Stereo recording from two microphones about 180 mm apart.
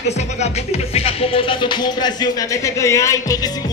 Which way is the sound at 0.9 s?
30° left (ahead or behind).